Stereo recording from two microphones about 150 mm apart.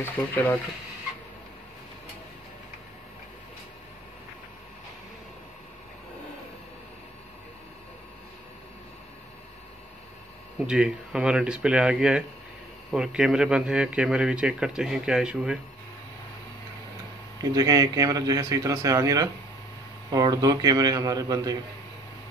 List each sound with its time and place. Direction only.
0.0 s speech: 15° left (ahead or behind)
10.7 s a man's voice: 5° right (ahead or behind)
17.4 s a man's voice: 25° right (ahead or behind)